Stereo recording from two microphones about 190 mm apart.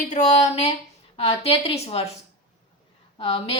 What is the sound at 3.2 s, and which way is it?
Speech, 30° left (ahead or behind).